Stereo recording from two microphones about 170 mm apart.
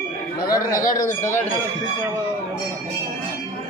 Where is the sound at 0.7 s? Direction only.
55° left (ahead or behind).